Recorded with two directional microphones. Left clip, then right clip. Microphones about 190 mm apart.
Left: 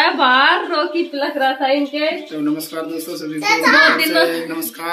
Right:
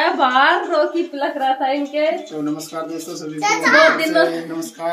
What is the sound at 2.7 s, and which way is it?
Speech, 10° right (ahead or behind).